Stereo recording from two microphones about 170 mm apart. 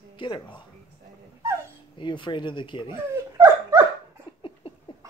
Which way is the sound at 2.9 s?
15° right (ahead or behind).